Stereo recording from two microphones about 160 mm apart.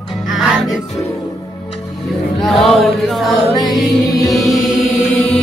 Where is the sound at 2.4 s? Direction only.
Centre (ahead or behind).